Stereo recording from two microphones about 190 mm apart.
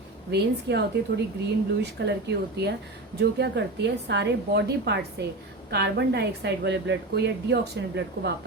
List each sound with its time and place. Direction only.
0.3 s a woman's voice: 60° right (ahead or behind)